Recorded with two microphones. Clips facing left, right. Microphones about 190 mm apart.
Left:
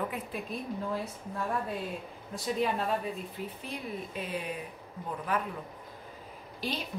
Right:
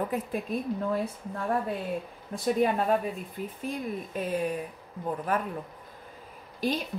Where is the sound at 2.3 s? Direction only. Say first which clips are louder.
Right 5 dB; 50° right (ahead or behind).